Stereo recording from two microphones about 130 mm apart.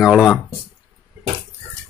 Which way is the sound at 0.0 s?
Centre (ahead or behind).